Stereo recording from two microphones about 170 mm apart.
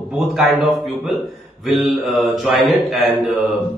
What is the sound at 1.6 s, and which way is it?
A man's voice, centre (ahead or behind).